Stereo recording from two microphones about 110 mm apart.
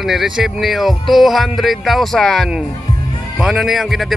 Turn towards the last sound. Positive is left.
turn(degrees=0)  # may be behind; listen again after turning